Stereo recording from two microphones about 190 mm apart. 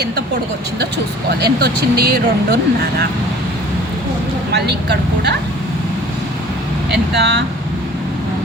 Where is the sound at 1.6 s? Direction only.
55° right (ahead or behind).